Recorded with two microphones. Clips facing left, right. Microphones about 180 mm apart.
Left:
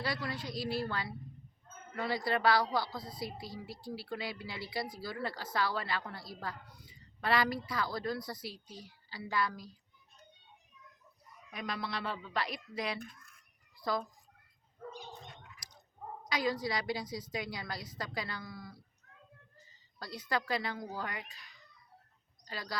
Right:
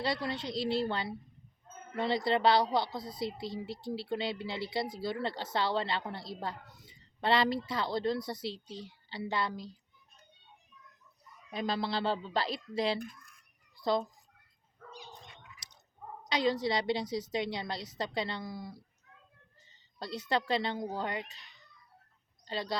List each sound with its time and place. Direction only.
0.0 s a woman's voice: 25° right (ahead or behind)
11.5 s a woman's voice: 30° right (ahead or behind)
16.2 s a woman's voice: 25° right (ahead or behind)
20.0 s a woman's voice: 25° right (ahead or behind)